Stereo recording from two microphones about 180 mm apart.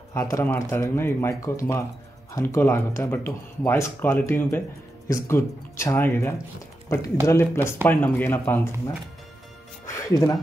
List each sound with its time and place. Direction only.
0.1 s speech: 15° left (ahead or behind)
9.8 s music: 15° left (ahead or behind)